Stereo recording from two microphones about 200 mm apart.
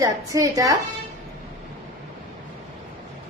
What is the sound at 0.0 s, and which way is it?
Speech, 15° right (ahead or behind).